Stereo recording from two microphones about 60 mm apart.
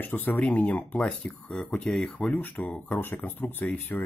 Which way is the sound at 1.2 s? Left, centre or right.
Centre.